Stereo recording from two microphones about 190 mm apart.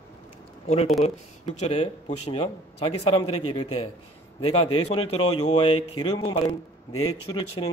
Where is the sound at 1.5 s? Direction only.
35° left (ahead or behind).